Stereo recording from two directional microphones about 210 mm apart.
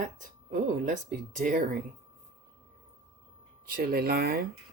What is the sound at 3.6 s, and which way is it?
Speech, 45° right (ahead or behind).